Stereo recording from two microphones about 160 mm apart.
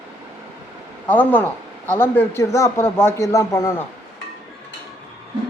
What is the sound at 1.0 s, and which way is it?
A man's voice, 10° left (ahead or behind).